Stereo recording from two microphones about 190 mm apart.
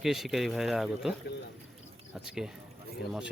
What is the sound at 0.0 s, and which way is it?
A man's voice, centre (ahead or behind).